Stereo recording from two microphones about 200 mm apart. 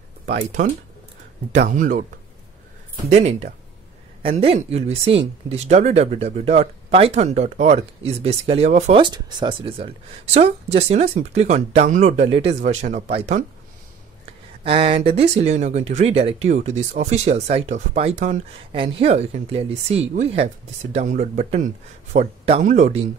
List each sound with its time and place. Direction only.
0.4 s speech: 40° right (ahead or behind)
3.1 s speech: 35° right (ahead or behind)
14.6 s speech: 30° right (ahead or behind)